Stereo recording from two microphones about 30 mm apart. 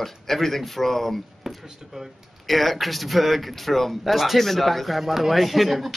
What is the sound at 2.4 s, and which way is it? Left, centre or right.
Speech, centre.